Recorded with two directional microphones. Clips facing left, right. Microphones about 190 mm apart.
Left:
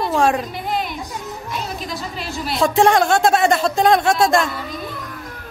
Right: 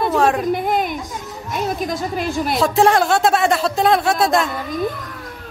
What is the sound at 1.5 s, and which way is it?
A woman's voice, 50° right (ahead or behind).